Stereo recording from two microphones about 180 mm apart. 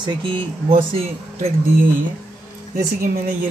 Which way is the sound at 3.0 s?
50° right (ahead or behind).